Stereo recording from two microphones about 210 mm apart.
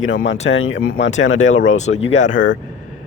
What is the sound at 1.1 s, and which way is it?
Speech, 65° left (ahead or behind).